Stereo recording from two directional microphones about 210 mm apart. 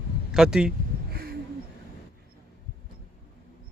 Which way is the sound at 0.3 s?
5° right (ahead or behind).